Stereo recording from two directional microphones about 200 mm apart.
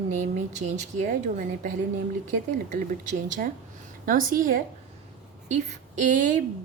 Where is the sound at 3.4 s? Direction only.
45° right (ahead or behind).